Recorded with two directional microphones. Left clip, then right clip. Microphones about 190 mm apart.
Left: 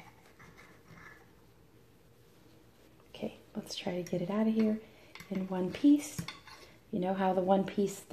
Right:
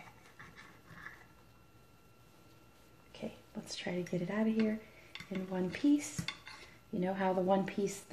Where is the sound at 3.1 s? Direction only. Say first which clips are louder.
Left 4 dB; 40° left (ahead or behind).